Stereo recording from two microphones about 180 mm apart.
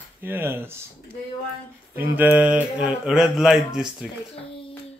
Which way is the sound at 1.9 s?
10° right (ahead or behind).